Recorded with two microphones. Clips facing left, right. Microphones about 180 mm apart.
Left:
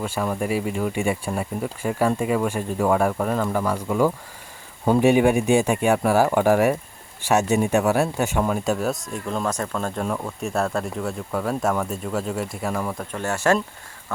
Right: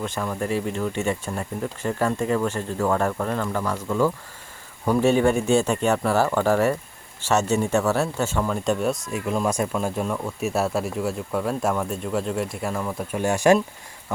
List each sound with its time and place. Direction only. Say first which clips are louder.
0.0 s speech: left 2 dB; 10° left (ahead or behind)
13.1 s speech: right 3 dB; 15° right (ahead or behind)